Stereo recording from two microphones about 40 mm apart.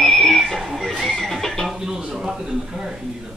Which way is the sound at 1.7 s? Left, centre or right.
Centre.